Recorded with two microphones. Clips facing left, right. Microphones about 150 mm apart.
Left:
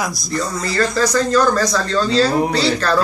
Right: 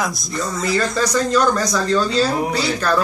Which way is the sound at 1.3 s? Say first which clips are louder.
Left 2 dB; 15° right (ahead or behind).